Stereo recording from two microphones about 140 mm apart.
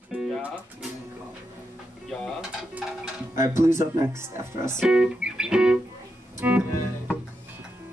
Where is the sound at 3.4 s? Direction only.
20° right (ahead or behind).